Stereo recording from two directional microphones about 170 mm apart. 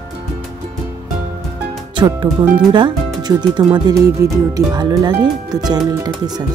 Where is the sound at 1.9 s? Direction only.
25° right (ahead or behind).